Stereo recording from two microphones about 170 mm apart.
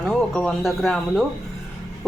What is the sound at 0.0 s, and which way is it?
Music, 5° left (ahead or behind).